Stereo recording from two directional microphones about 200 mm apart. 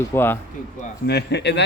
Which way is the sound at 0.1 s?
10° left (ahead or behind).